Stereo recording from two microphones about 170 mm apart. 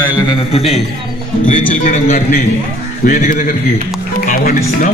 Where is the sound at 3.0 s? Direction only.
50° left (ahead or behind).